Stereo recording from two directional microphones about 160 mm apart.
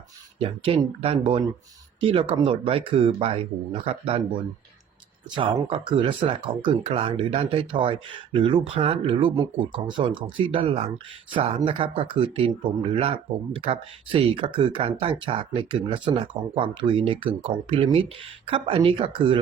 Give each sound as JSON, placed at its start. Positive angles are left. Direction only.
{"t": 0.3, "sound": "speech", "side_deg": -35}